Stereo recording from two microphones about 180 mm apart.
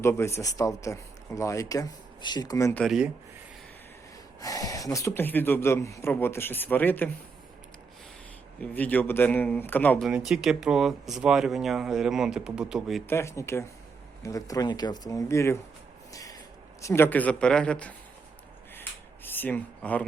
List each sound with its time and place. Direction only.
0.0 s speech: 15° left (ahead or behind)
2.8 s speech: centre (ahead or behind)
4.4 s speech: 20° left (ahead or behind)
8.6 s speech: 10° left (ahead or behind)
10.1 s speech: 5° right (ahead or behind)
13.1 s speech: 15° left (ahead or behind)
16.1 s a sound: 20° left (ahead or behind)
16.8 s speech: 15° left (ahead or behind)
18.7 s a sound: 10° left (ahead or behind)